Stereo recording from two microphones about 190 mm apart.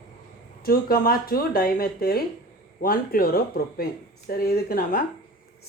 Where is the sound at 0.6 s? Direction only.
50° left (ahead or behind).